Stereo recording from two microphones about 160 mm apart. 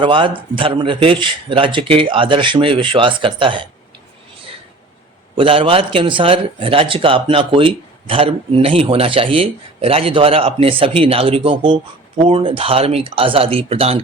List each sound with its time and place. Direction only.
0.0 s speech: 30° right (ahead or behind)
5.4 s speech: 35° right (ahead or behind)